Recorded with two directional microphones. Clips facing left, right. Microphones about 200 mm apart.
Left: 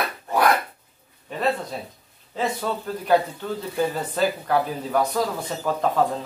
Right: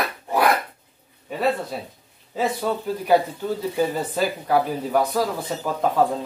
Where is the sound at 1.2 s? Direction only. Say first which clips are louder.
Right 2 dB; 5° right (ahead or behind).